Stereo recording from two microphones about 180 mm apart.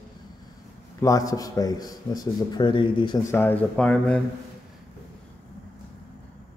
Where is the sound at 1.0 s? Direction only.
20° left (ahead or behind).